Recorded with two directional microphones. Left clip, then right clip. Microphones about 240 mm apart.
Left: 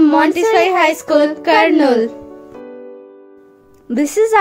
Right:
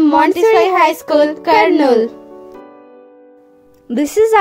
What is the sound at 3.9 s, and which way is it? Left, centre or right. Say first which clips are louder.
Speech: right 2 dB; centre.